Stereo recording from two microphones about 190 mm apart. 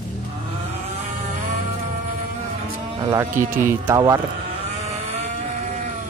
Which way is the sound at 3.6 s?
15° right (ahead or behind).